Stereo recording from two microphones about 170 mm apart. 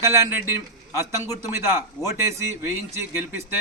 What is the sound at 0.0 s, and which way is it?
A man's voice, 15° right (ahead or behind).